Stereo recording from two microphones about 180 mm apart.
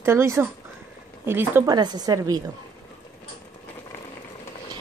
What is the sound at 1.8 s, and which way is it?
Speech, 25° right (ahead or behind).